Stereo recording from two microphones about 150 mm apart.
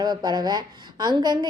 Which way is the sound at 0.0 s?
30° right (ahead or behind).